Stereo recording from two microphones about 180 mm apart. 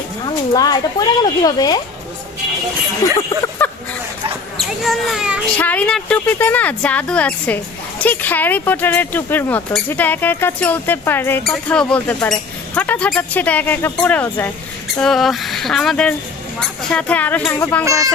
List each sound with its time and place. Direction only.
0.5 s a woman's voice: 20° left (ahead or behind)
3.0 s speech: 20° left (ahead or behind)
4.5 s a sound: centre (ahead or behind)
5.5 s speech: 10° left (ahead or behind)
14.9 s a sound: centre (ahead or behind)
16.6 s speech: 5° left (ahead or behind)